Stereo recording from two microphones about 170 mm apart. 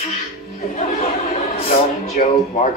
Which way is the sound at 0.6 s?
45° left (ahead or behind).